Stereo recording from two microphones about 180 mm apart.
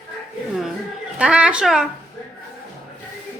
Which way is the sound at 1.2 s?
5° right (ahead or behind).